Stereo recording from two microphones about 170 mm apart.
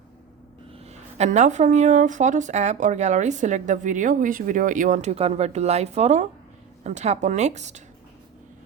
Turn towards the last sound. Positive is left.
turn(degrees=-45)  # may be behind; listen again after turning